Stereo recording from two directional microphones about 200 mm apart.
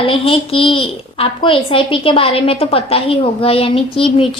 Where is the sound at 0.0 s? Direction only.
25° left (ahead or behind).